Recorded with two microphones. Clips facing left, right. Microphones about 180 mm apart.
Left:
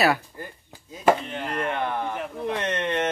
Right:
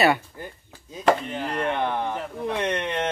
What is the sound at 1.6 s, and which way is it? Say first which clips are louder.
Speech: right 2 dB; 20° right (ahead or behind).